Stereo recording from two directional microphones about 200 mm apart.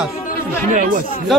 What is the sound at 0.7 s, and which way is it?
Speech, 40° right (ahead or behind).